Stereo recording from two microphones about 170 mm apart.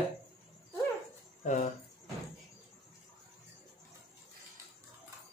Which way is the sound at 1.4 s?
45° left (ahead or behind).